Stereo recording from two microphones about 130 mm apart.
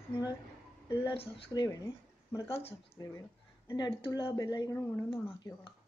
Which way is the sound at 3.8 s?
35° left (ahead or behind).